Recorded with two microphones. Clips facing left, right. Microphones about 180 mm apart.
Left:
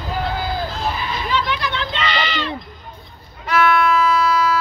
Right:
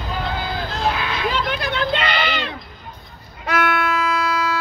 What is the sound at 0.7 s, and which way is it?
Goat, 75° right (ahead or behind).